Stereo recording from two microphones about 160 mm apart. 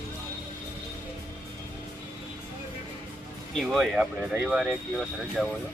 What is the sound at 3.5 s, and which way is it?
Speech, centre (ahead or behind).